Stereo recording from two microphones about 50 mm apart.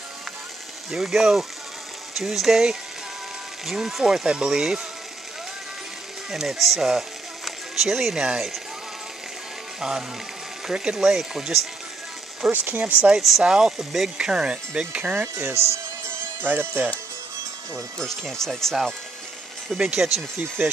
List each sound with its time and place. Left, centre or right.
0.8 s speech: centre
6.3 s speech: centre
6.9 s a sound: centre
9.8 s speech: centre
12.4 s speech: right
13.4 s speech: centre
15.3 s speech: right
16.3 s speech: right
17.9 s speech: centre
19.7 s speech: centre
20.2 s speech: right